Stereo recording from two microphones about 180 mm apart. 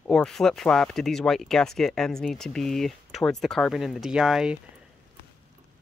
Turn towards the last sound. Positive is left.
turn(degrees=-5)  # may be behind; listen again after turning